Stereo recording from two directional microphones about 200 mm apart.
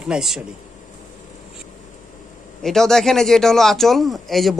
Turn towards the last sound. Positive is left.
turn(degrees=0)  # may be behind; listen again after turning